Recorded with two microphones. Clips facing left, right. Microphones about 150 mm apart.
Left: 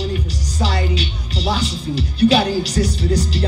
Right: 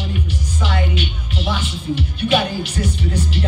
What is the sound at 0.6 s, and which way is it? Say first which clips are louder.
Speech: left 2 dB; 35° left (ahead or behind).